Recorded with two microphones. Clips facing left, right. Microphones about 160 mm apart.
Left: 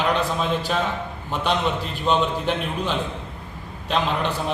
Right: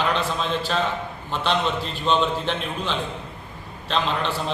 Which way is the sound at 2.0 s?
10° left (ahead or behind).